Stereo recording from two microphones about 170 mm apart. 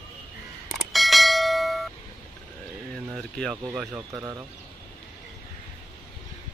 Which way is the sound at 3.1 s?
Centre (ahead or behind).